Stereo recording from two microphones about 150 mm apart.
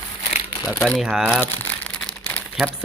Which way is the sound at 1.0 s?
5° right (ahead or behind).